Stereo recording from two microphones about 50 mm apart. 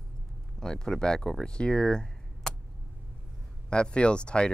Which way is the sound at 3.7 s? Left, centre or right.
Centre.